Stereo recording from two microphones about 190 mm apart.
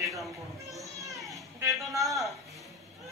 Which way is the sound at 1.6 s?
15° right (ahead or behind).